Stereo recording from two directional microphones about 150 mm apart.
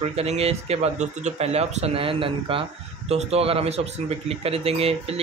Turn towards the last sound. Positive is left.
turn(degrees=-40)  # may be behind; listen again after turning